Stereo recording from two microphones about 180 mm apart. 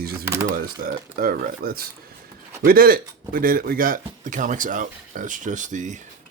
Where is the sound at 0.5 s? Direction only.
50° right (ahead or behind).